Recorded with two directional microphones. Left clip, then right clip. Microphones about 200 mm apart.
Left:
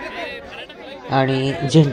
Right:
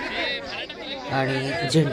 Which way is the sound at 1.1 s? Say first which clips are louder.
Left 6 dB; 20° left (ahead or behind).